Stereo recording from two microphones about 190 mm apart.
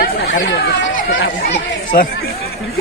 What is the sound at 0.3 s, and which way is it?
Speech, 75° left (ahead or behind).